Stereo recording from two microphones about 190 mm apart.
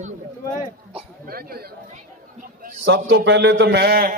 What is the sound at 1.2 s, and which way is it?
Chatter, 50° right (ahead or behind).